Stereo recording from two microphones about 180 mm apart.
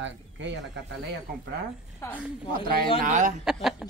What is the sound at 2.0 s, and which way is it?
Speech, 15° left (ahead or behind).